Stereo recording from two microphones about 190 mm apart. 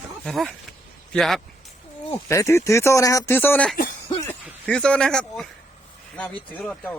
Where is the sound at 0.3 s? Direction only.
Centre (ahead or behind).